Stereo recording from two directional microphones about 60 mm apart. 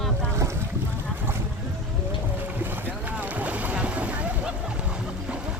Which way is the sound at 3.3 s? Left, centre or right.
Right.